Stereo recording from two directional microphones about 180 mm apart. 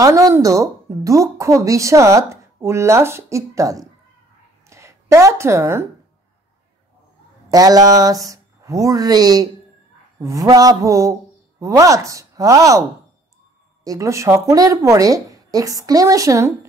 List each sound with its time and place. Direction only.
0.0 s a woman's voice: 20° right (ahead or behind)
7.5 s a woman's voice: 20° right (ahead or behind)
13.8 s a woman's voice: 15° right (ahead or behind)